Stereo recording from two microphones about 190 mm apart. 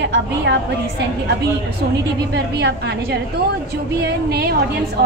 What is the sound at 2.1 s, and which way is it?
A woman's voice, 60° right (ahead or behind).